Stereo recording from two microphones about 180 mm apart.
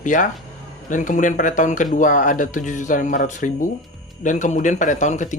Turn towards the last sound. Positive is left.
turn(degrees=40)  # may be behind; listen again after turning